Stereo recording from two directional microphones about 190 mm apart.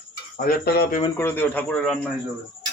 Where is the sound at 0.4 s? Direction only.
55° left (ahead or behind).